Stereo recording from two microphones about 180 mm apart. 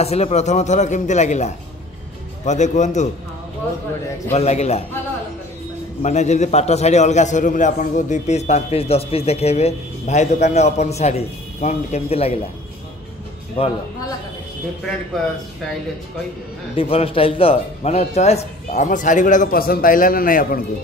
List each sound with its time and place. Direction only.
0.0 s a man's voice: 35° left (ahead or behind)
4.3 s a man's voice: 40° left (ahead or behind)
6.0 s a man's voice: 40° left (ahead or behind)
13.6 s a man's voice: 30° left (ahead or behind)
16.7 s a man's voice: 30° left (ahead or behind); by 20.6 s 50° left (ahead or behind)